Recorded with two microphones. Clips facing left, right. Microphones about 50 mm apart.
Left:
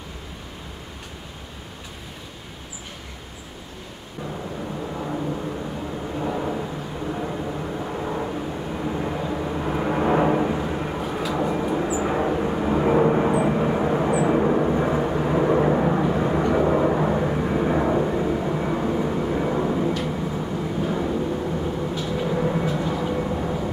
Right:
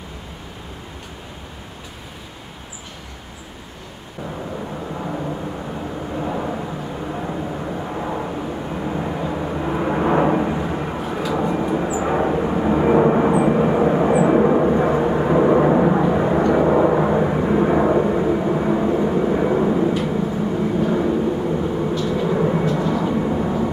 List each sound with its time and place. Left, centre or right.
4.9 s vehicle: centre
22.0 s vehicle: centre